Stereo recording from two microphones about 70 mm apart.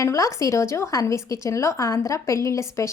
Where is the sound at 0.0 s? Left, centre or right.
Left.